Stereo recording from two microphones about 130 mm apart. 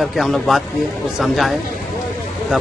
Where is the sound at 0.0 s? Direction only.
Centre (ahead or behind).